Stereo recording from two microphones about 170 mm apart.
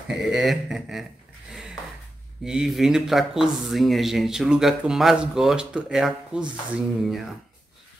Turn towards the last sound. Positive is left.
turn(degrees=0)  # may be behind; listen again after turning